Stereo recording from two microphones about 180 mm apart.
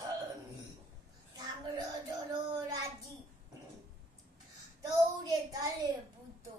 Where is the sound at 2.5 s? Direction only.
20° right (ahead or behind).